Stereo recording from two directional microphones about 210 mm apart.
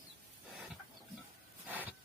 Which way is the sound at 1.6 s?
10° right (ahead or behind).